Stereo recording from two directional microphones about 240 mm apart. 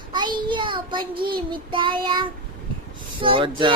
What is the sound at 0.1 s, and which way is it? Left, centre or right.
Child singing, centre.